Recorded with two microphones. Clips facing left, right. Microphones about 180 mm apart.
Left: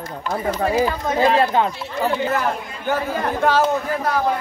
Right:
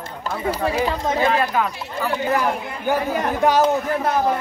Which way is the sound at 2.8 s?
15° right (ahead or behind).